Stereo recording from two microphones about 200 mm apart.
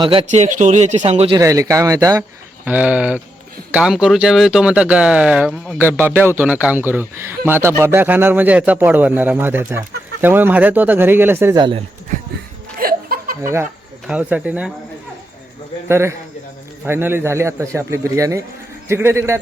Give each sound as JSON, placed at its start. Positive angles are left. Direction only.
{"t": 0.0, "sound": "speech", "side_deg": -25}
{"t": 0.3, "sound": "speech", "side_deg": -40}
{"t": 1.4, "sound": "a man's voice", "side_deg": -15}
{"t": 5.8, "sound": "a man's voice", "side_deg": -10}
{"t": 12.8, "sound": "laughter", "side_deg": -45}
{"t": 13.4, "sound": "a man's voice", "side_deg": -15}
{"t": 15.9, "sound": "a man's voice", "side_deg": -15}